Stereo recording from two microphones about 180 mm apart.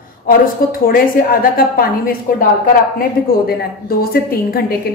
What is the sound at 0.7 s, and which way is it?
A woman's voice, 55° left (ahead or behind).